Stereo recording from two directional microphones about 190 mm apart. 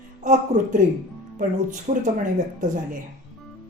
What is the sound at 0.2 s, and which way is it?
Speech, 40° right (ahead or behind).